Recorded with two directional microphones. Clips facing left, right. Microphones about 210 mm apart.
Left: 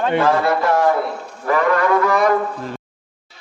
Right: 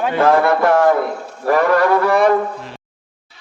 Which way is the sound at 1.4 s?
35° right (ahead or behind).